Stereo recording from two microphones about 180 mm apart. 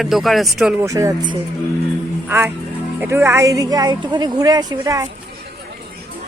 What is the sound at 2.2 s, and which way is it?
A woman's voice, 10° right (ahead or behind).